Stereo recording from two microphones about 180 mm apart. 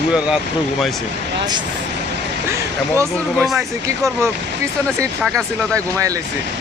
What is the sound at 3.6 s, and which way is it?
Speech, 15° right (ahead or behind).